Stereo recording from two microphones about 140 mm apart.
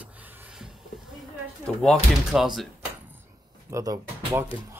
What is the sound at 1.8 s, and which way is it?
Speech, centre (ahead or behind).